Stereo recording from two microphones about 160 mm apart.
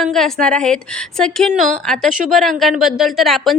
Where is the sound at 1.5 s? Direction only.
55° right (ahead or behind).